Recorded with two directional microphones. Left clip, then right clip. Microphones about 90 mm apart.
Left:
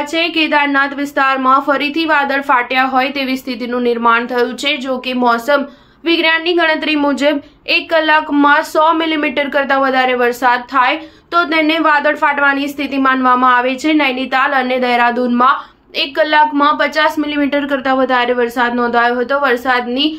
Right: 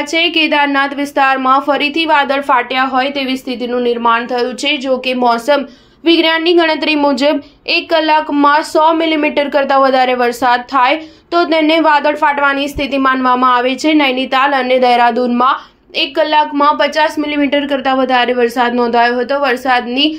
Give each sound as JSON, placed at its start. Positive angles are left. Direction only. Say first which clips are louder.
{"t": 0.1, "sound": "a woman's voice", "louder": "right 2 dB", "side_deg": -35}